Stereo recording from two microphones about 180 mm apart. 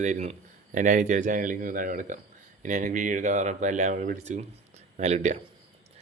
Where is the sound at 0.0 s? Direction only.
40° right (ahead or behind).